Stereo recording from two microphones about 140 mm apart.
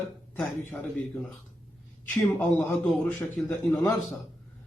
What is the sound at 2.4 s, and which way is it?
Speech, 15° left (ahead or behind).